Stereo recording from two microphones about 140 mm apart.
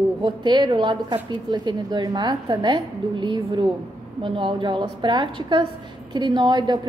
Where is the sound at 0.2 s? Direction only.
35° right (ahead or behind).